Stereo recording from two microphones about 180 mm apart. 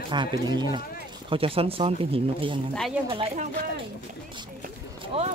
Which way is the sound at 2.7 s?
Centre (ahead or behind).